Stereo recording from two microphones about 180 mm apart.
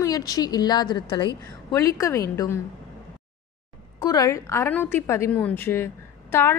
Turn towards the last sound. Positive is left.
turn(degrees=15)  # may be behind; listen again after turning